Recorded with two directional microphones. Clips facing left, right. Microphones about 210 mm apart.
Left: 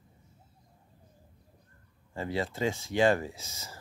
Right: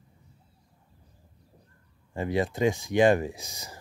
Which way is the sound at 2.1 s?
15° right (ahead or behind).